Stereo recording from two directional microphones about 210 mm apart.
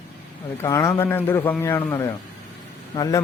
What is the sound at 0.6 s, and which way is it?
Speech, 15° left (ahead or behind).